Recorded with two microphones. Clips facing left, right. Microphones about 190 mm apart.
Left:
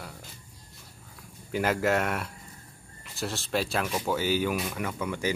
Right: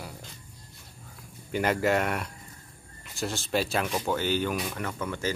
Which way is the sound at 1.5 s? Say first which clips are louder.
Right 1 dB; centre (ahead or behind).